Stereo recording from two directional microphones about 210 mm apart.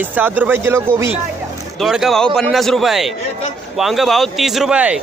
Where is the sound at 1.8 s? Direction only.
Centre (ahead or behind).